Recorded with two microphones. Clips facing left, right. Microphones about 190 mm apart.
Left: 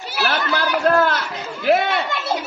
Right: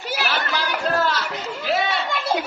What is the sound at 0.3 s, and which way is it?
Chatter, 55° left (ahead or behind).